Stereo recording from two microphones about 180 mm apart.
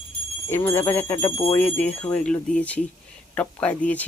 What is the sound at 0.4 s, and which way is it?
Speech, 15° left (ahead or behind).